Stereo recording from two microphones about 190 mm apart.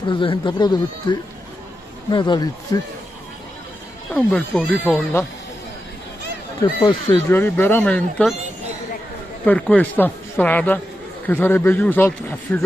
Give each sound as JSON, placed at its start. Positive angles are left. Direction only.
{"t": 0.0, "sound": "speech", "side_deg": 25}
{"t": 4.1, "sound": "speech", "side_deg": 5}
{"t": 6.6, "sound": "speech", "side_deg": 20}
{"t": 7.2, "sound": "speech", "side_deg": 10}
{"t": 9.5, "sound": "speech", "side_deg": 5}